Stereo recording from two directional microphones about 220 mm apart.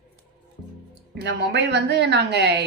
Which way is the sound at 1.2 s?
50° right (ahead or behind).